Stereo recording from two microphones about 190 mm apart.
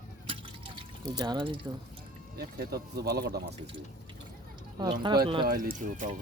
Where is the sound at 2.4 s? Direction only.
55° right (ahead or behind).